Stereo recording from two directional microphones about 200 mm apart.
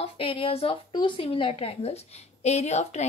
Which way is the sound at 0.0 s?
25° left (ahead or behind).